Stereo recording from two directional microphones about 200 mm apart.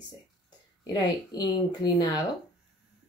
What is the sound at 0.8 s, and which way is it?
Speech, 20° left (ahead or behind).